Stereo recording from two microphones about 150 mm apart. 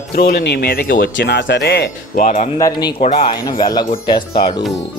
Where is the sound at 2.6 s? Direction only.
25° left (ahead or behind).